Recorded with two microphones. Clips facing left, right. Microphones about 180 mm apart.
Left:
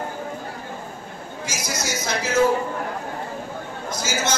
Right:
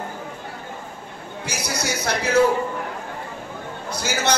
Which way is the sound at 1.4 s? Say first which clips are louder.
Right 2 dB; 65° right (ahead or behind).